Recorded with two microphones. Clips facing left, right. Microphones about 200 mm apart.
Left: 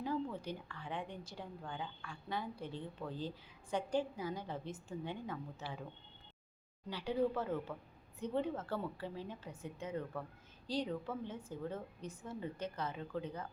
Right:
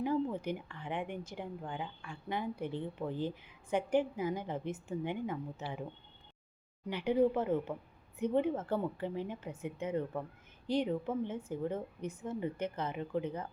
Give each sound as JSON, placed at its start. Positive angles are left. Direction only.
{"t": 0.0, "sound": "a woman's voice", "side_deg": -20}
{"t": 6.8, "sound": "a woman's voice", "side_deg": -20}